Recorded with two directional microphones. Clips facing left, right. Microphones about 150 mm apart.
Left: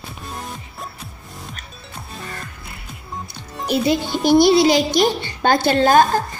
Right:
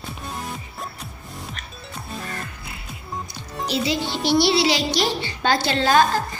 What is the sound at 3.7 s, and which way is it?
A woman's voice, 50° left (ahead or behind).